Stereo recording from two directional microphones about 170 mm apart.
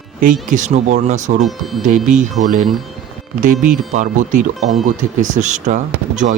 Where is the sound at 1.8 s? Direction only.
45° right (ahead or behind).